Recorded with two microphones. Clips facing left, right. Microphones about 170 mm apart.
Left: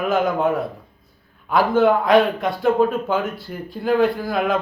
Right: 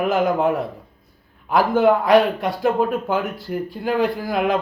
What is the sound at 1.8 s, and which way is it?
Speech, 5° right (ahead or behind).